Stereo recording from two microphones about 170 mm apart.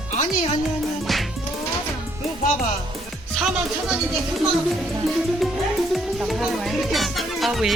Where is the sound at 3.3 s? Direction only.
5° right (ahead or behind).